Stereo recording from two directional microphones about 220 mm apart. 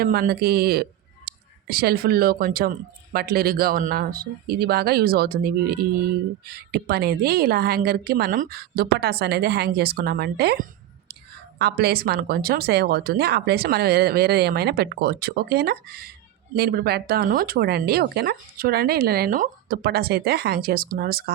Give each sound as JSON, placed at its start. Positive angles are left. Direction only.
{"t": 0.0, "sound": "speech", "side_deg": -45}